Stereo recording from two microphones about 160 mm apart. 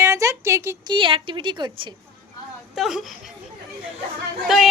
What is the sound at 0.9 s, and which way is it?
Speech, 30° right (ahead or behind).